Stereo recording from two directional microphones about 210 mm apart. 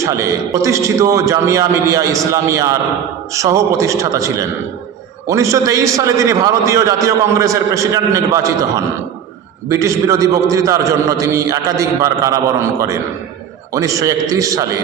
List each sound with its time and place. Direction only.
0.0 s a man's voice: 15° right (ahead or behind)